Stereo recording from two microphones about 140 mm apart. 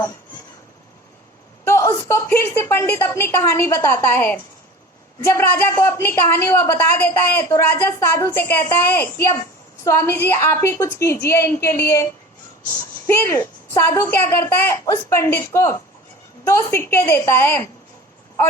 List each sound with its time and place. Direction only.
1.6 s a woman's voice: 20° left (ahead or behind)
13.1 s a woman's voice: 15° left (ahead or behind)